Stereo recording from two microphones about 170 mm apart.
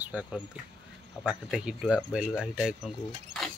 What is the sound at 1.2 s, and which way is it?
Speech, 5° right (ahead or behind).